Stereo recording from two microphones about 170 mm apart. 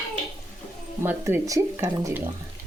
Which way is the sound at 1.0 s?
15° right (ahead or behind).